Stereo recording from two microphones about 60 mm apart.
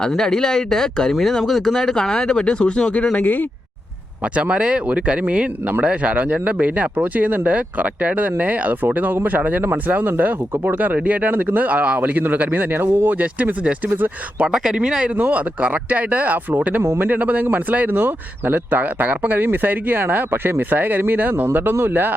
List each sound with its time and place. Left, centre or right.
0.2 s speech: centre; by 3.4 s left
4.4 s speech: centre
14.4 s speech: centre
15.2 s speech: right